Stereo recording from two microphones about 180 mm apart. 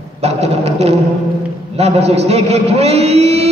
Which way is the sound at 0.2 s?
35° right (ahead or behind).